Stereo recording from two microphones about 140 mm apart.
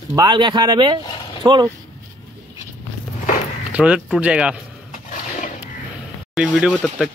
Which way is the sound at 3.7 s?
10° right (ahead or behind).